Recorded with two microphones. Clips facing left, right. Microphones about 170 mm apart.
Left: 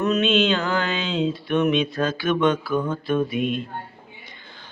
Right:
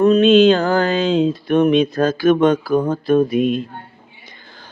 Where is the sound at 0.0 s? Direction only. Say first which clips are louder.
Right 9 dB; 35° right (ahead or behind).